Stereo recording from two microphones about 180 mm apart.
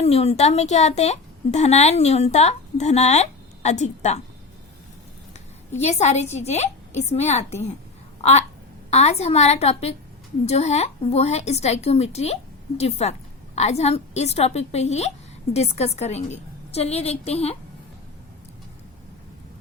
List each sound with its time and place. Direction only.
0.0 s a woman's voice: 35° left (ahead or behind)
5.7 s a woman's voice: 35° left (ahead or behind)
8.2 s a sound: 35° left (ahead or behind)
8.9 s a woman's voice: 35° left (ahead or behind)